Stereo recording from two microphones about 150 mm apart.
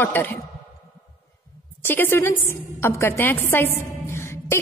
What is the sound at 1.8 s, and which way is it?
A woman's voice, 15° left (ahead or behind).